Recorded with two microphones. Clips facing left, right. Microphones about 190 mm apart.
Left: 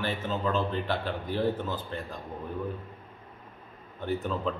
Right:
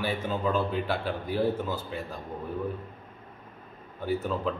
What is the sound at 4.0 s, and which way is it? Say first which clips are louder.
Speech: right 2 dB; 10° right (ahead or behind).